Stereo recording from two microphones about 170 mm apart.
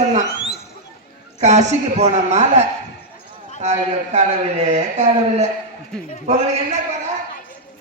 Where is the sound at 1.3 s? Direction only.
45° right (ahead or behind).